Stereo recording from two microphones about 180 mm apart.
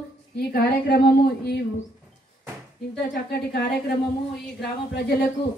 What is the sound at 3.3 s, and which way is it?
Speech, 60° left (ahead or behind).